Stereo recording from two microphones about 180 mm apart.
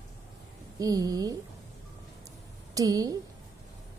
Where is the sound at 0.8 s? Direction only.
20° right (ahead or behind).